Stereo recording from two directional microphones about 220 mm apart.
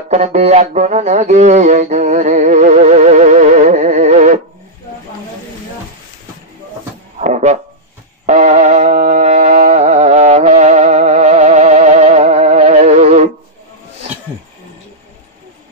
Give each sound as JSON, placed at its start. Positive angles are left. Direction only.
{"t": 0.1, "sound": "music", "side_deg": -30}
{"t": 7.2, "sound": "music", "side_deg": -30}